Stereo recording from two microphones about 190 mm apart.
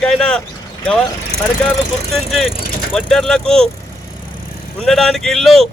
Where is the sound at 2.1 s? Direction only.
Centre (ahead or behind).